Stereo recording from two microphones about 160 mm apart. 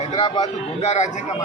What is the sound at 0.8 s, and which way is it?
Speech, 45° left (ahead or behind).